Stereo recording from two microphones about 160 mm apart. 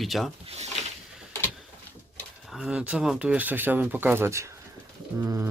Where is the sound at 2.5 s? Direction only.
5° right (ahead or behind).